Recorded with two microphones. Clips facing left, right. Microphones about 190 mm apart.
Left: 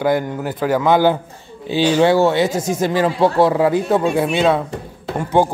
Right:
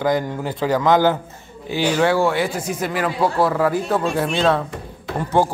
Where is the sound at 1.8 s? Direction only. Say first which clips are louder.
Left 4 dB; 25° left (ahead or behind).